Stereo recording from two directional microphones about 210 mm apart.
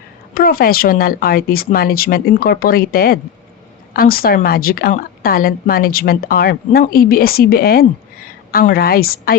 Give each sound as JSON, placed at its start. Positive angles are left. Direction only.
{"t": 0.3, "sound": "speech", "side_deg": 45}